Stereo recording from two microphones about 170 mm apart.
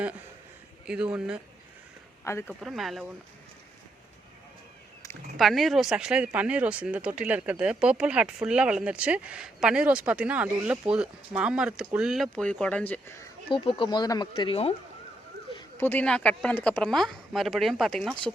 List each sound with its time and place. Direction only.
0.9 s speech: 5° right (ahead or behind)
2.5 s speech: centre (ahead or behind)
5.4 s speech: centre (ahead or behind)
13.5 s speech: 30° left (ahead or behind)
15.8 s speech: 10° left (ahead or behind)